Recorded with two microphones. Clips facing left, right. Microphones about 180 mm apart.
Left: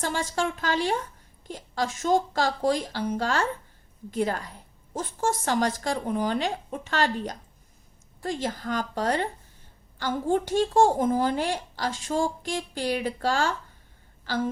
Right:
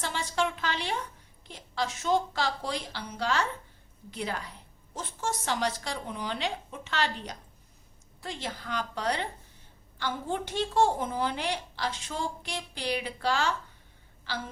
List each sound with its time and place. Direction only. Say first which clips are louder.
0.0 s speech: left 3 dB; 45° left (ahead or behind)